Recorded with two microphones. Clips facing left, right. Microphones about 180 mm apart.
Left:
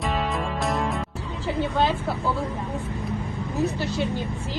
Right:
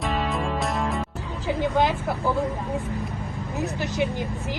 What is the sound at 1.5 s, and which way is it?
Speech, 15° right (ahead or behind).